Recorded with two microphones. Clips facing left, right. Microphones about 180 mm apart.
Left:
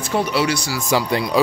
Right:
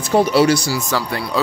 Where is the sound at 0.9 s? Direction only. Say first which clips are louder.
Left 3 dB; 20° left (ahead or behind).